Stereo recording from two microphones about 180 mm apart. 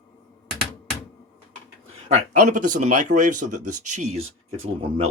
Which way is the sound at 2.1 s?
40° right (ahead or behind).